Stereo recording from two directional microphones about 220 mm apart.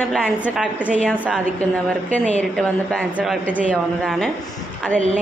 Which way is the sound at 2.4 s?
5° left (ahead or behind).